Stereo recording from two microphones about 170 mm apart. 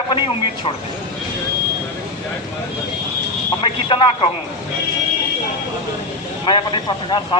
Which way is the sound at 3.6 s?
30° left (ahead or behind).